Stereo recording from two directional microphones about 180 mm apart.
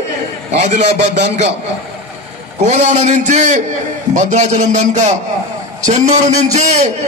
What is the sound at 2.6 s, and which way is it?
A man's voice, 40° right (ahead or behind).